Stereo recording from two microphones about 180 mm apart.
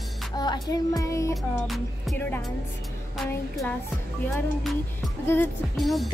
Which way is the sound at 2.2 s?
10° left (ahead or behind).